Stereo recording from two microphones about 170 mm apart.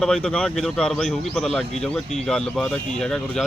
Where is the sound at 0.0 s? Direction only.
5° left (ahead or behind).